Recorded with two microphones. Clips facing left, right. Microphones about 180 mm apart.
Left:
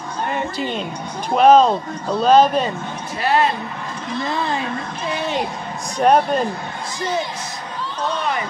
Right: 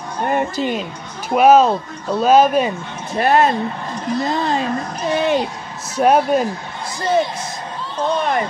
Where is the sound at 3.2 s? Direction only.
50° right (ahead or behind).